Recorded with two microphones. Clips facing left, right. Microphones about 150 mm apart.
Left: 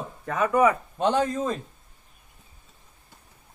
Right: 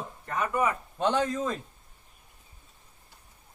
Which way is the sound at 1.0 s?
25° left (ahead or behind).